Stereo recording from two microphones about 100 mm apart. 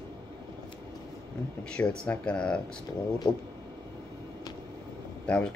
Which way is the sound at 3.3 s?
50° left (ahead or behind).